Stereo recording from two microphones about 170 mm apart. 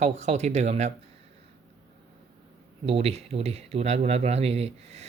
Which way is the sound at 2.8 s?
35° right (ahead or behind).